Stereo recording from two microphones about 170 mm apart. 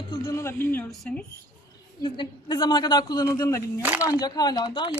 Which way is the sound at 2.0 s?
25° left (ahead or behind).